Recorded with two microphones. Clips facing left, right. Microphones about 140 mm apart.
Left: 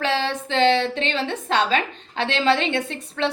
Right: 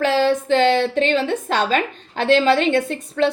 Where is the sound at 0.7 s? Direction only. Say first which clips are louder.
Right 4 dB; 45° right (ahead or behind).